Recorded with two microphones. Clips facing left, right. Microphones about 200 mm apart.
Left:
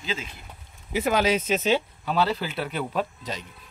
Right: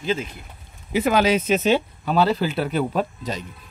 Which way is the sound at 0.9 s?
85° right.